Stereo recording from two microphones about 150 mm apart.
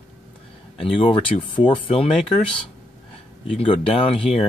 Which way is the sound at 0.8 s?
35° left (ahead or behind).